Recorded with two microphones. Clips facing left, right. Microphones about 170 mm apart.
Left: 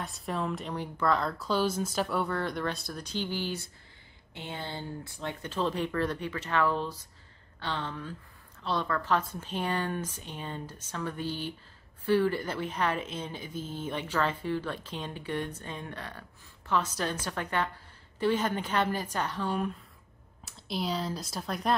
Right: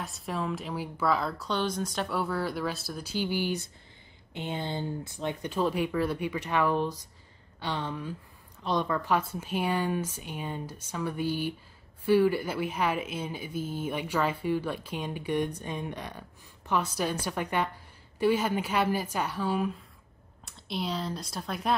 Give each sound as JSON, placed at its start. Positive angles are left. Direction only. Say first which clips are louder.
{"t": 0.0, "sound": "a woman's voice", "louder": "even", "side_deg": 0}